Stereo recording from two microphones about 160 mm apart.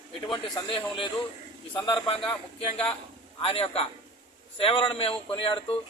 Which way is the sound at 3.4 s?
35° left (ahead or behind).